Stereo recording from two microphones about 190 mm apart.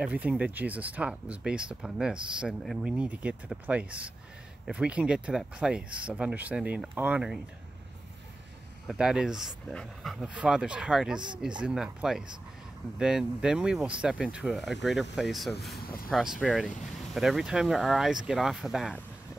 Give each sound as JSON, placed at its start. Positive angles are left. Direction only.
{"t": 0.0, "sound": "speech", "side_deg": -5}
{"t": 8.8, "sound": "speech", "side_deg": -5}
{"t": 15.7, "sound": "speech", "side_deg": 50}
{"t": 16.1, "sound": "speech", "side_deg": 0}